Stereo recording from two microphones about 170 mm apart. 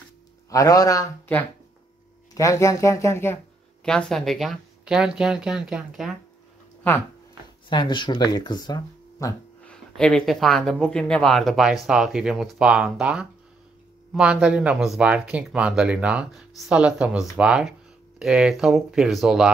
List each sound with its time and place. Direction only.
0.5 s speech: 20° left (ahead or behind)
3.8 s speech: 5° left (ahead or behind)
7.7 s speech: 25° left (ahead or behind)
9.7 s speech: 5° left (ahead or behind)